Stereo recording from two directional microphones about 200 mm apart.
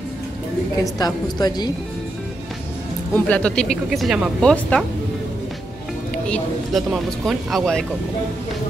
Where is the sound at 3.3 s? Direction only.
5° left (ahead or behind).